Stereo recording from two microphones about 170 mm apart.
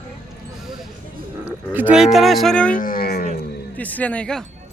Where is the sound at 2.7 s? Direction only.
55° left (ahead or behind).